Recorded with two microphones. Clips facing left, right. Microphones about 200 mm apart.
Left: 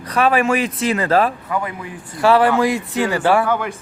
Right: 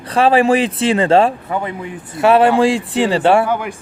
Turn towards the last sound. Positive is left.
turn(degrees=-15)  # may be behind; listen again after turning